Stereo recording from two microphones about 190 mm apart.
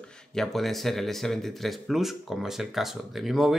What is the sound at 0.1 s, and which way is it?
Speech, 5° left (ahead or behind).